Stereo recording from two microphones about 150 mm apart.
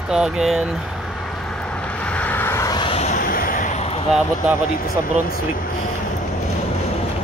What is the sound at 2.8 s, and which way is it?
Vehicle, 45° left (ahead or behind).